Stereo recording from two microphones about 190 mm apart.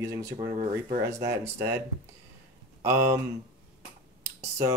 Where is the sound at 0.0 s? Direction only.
15° right (ahead or behind).